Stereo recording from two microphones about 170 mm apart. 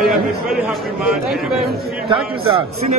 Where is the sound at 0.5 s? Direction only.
5° right (ahead or behind).